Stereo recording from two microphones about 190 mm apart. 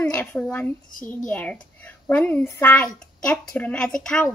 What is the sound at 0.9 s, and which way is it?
Speech, 45° left (ahead or behind).